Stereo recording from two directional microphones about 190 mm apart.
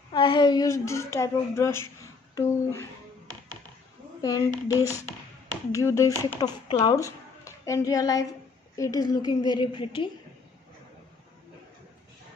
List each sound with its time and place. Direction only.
0.1 s speech: 25° left (ahead or behind)
4.2 s a woman's voice: 15° left (ahead or behind)